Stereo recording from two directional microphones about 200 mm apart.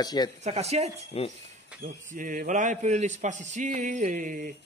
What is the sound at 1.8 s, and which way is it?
A man's voice, 40° right (ahead or behind).